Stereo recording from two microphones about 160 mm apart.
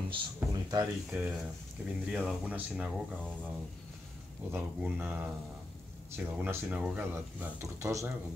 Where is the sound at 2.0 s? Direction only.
5° right (ahead or behind).